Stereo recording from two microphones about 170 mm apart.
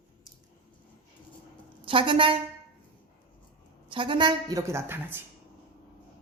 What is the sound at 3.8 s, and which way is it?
A woman's voice, 30° right (ahead or behind).